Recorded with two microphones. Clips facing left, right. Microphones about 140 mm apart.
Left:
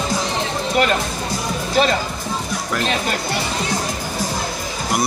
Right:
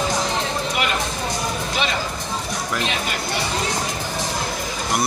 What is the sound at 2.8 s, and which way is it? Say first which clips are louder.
Speech: left 4 dB; 40° left (ahead or behind).